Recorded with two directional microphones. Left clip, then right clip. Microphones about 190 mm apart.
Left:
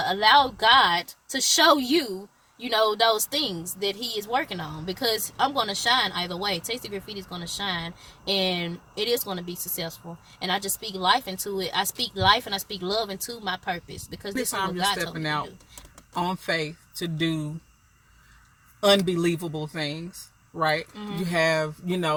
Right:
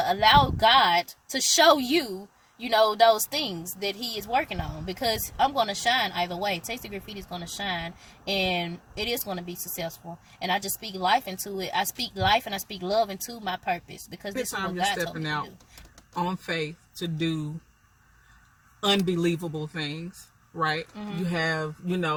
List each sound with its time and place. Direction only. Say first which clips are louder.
0.0 s speech: left 1 dB; 15° right (ahead or behind)
14.9 s speech: left 2 dB; 20° left (ahead or behind)
18.8 s speech: left 4 dB; 25° left (ahead or behind)
20.9 s speech: left 2 dB; 15° right (ahead or behind)
21.2 s speech: left 5 dB; 25° left (ahead or behind)